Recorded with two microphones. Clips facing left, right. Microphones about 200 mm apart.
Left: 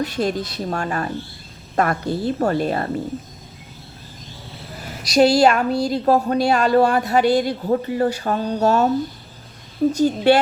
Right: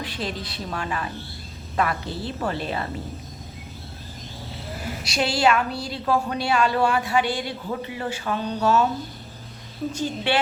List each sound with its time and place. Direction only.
0.0 s speech: 45° left (ahead or behind)
5.0 s a woman's voice: 40° left (ahead or behind)
9.9 s a woman's voice: 40° left (ahead or behind)